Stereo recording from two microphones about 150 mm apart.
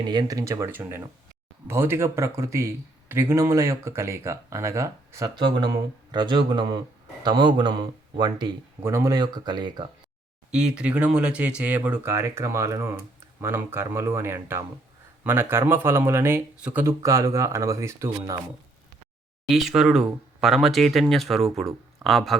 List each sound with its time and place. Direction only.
0.1 s speech: 25° right (ahead or behind)
5.4 s speech: 30° right (ahead or behind)
8.8 s speech: 15° right (ahead or behind)
10.5 s speech: 5° right (ahead or behind)
16.8 s speech: 20° right (ahead or behind)
19.5 s speech: centre (ahead or behind)